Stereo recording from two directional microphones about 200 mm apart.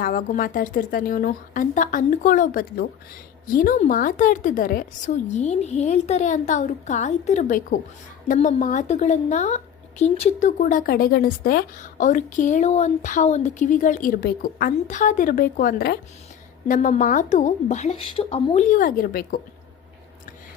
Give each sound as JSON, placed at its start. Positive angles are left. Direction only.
{"t": 0.0, "sound": "speech", "side_deg": 45}